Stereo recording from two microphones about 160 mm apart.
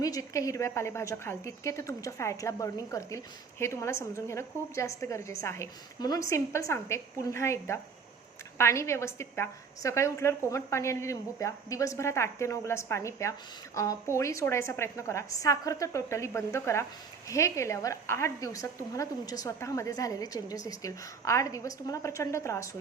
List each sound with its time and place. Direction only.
0.0 s a woman's voice: 20° left (ahead or behind)